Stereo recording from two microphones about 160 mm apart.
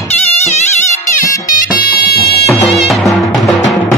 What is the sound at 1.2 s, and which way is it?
Music, 60° left (ahead or behind).